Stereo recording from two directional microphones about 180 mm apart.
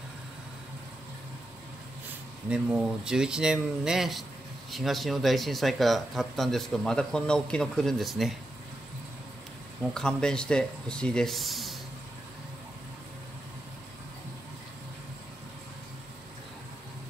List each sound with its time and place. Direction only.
2.5 s speech: 5° right (ahead or behind)
9.9 s speech: 5° left (ahead or behind)